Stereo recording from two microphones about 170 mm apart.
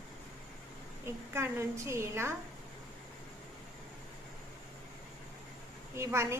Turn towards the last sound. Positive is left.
turn(degrees=-15)  # may be behind; listen again after turning